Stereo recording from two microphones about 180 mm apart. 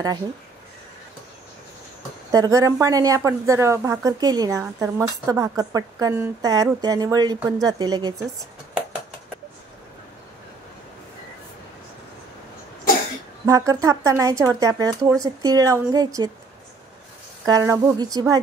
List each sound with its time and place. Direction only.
2.3 s a woman's voice: 20° right (ahead or behind)
13.5 s a woman's voice: 20° right (ahead or behind)
17.5 s a woman's voice: 20° right (ahead or behind)